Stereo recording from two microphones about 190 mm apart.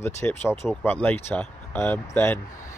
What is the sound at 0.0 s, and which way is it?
Speech, 10° left (ahead or behind).